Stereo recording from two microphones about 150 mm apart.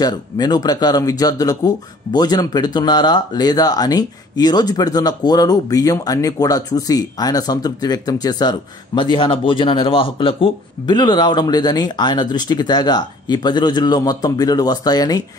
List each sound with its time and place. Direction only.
0.0 s speech: 25° left (ahead or behind)